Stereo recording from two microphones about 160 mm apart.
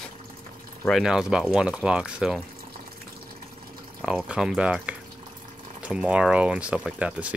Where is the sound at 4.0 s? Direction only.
5° right (ahead or behind).